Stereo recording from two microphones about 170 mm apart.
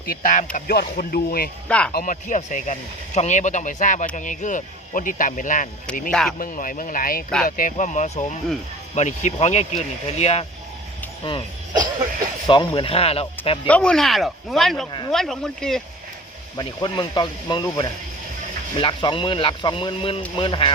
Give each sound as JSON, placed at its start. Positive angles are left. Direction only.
{"t": 0.0, "sound": "speech", "side_deg": 55}
{"t": 0.5, "sound": "speech", "side_deg": 65}
{"t": 1.6, "sound": "speech", "side_deg": 5}
{"t": 1.9, "sound": "speech", "side_deg": 55}
{"t": 6.1, "sound": "speech", "side_deg": 5}
{"t": 6.4, "sound": "speech", "side_deg": 55}
{"t": 11.2, "sound": "speech", "side_deg": 25}
{"t": 12.5, "sound": "speech", "side_deg": 30}
{"t": 13.7, "sound": "speech", "side_deg": 5}
{"t": 16.6, "sound": "speech", "side_deg": 25}